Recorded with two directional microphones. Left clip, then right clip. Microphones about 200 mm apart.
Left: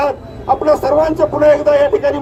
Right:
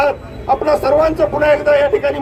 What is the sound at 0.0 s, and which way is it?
A man's voice, 25° left (ahead or behind).